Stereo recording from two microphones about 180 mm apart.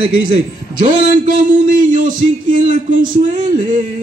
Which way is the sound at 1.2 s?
50° right (ahead or behind).